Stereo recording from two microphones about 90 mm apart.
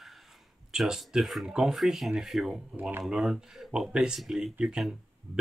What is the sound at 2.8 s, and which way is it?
Speech, 20° right (ahead or behind).